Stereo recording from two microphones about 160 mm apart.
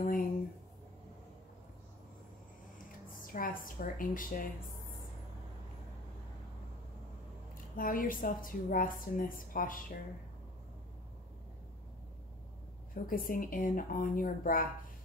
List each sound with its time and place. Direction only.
0.0 s a sound: 60° left (ahead or behind)
3.1 s a woman's voice: 60° left (ahead or behind)
7.7 s a woman's voice: 60° left (ahead or behind)
12.9 s a woman's voice: 60° left (ahead or behind)